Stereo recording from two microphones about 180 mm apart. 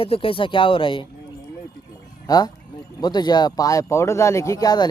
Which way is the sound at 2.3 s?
20° left (ahead or behind).